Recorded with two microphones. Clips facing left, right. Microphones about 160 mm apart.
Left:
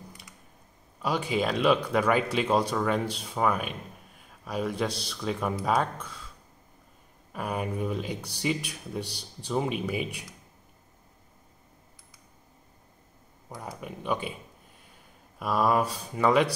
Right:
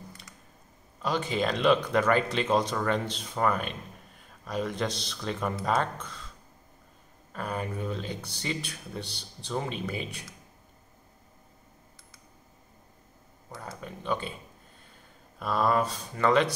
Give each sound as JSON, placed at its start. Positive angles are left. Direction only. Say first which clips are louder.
{"t": 1.0, "sound": "speech", "louder": "left 1 dB", "side_deg": 10}
{"t": 7.3, "sound": "speech", "louder": "left 2 dB", "side_deg": 10}
{"t": 13.5, "sound": "speech", "louder": "left 2 dB", "side_deg": 15}
{"t": 15.3, "sound": "speech", "louder": "left 1 dB", "side_deg": 10}